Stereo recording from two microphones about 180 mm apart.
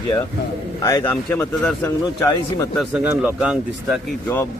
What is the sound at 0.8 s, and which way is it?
Speech, 20° left (ahead or behind).